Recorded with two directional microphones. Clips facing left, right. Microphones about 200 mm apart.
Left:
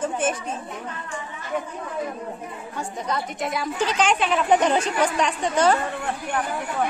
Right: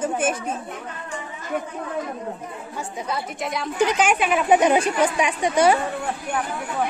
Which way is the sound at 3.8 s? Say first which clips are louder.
Right 3 dB; 10° right (ahead or behind).